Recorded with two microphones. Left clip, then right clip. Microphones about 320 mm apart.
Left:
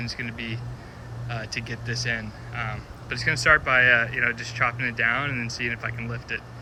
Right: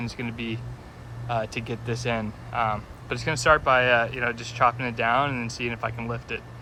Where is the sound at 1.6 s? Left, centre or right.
Centre.